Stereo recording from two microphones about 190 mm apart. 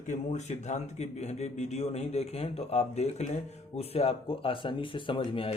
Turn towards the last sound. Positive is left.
turn(degrees=30)  # may be behind; listen again after turning